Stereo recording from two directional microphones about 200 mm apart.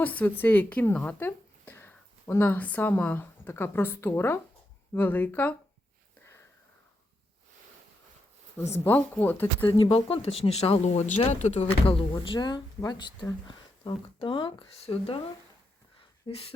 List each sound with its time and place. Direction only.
0.0 s speech: 10° left (ahead or behind)
8.7 s speech: 10° left (ahead or behind)
9.7 s speech: 25° left (ahead or behind)
16.2 s speech: 30° left (ahead or behind)